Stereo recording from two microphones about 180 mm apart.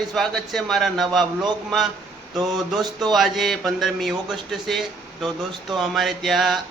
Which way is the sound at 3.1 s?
Centre (ahead or behind).